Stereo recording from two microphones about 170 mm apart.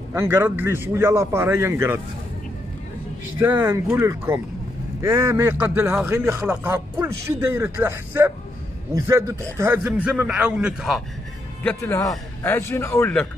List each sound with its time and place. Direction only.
0.1 s a man's voice: 15° right (ahead or behind)
3.5 s a man's voice: 25° right (ahead or behind); by 11.0 s 5° right (ahead or behind)
11.6 s a man's voice: 15° left (ahead or behind)